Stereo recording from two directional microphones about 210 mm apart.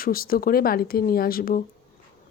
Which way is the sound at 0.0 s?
45° left (ahead or behind).